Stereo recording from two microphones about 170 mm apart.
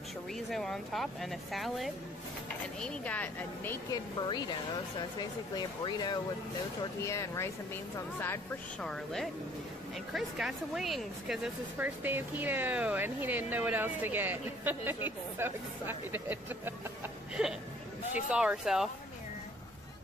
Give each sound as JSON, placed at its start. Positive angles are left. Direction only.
{"t": 0.3, "sound": "speech", "side_deg": 0}
{"t": 4.3, "sound": "speech", "side_deg": 25}
{"t": 5.6, "sound": "speech", "side_deg": 25}
{"t": 8.8, "sound": "speech", "side_deg": 0}